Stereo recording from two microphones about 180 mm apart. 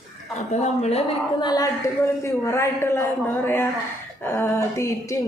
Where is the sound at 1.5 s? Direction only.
20° left (ahead or behind).